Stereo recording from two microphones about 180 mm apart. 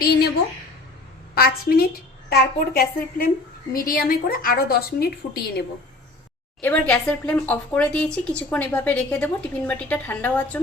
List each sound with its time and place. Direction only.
1.4 s a woman's voice: 60° left (ahead or behind)
6.6 s speech: 5° left (ahead or behind)